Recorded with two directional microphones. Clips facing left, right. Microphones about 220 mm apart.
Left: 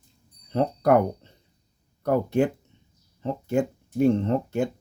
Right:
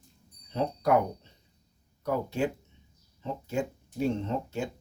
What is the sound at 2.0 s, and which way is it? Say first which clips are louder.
Speech: left 7 dB; 55° left (ahead or behind).